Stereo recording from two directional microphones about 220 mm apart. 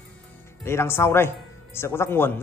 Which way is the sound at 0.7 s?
10° left (ahead or behind).